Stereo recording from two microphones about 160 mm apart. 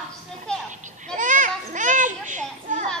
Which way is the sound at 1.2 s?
50° right (ahead or behind).